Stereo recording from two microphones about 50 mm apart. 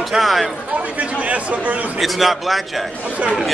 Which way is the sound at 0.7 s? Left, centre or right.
Right.